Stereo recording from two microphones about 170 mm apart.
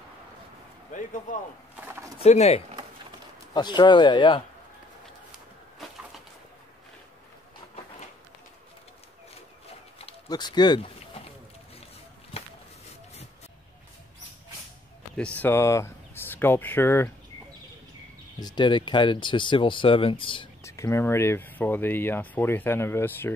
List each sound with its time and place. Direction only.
1.8 s speech: 10° right (ahead or behind)
2.1 s speech: 40° left (ahead or behind)
3.5 s speech: 25° left (ahead or behind)
10.3 s speech: 25° left (ahead or behind)
12.3 s a sound: 35° left (ahead or behind)
15.1 s speech: 10° left (ahead or behind)
18.4 s speech: 25° left (ahead or behind)
20.6 s speech: 15° left (ahead or behind)